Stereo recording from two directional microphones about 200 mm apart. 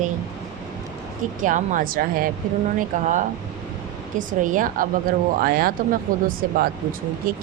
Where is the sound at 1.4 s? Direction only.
40° right (ahead or behind).